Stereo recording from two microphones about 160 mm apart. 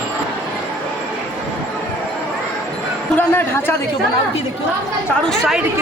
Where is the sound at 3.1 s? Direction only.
15° left (ahead or behind).